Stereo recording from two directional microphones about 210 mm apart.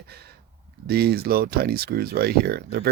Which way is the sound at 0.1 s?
50° right (ahead or behind).